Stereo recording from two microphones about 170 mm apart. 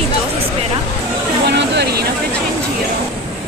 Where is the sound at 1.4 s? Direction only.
85° right.